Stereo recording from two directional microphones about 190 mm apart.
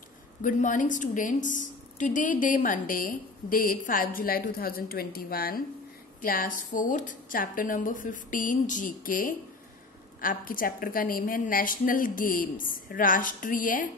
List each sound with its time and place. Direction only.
0.4 s a woman's voice: 40° left (ahead or behind)